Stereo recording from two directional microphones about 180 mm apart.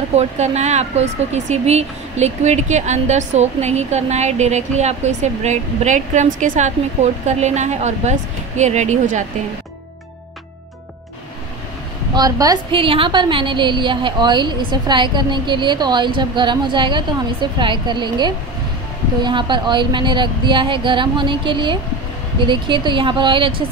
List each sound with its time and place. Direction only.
0.1 s speech: 40° right (ahead or behind)
12.1 s a woman's voice: 20° right (ahead or behind)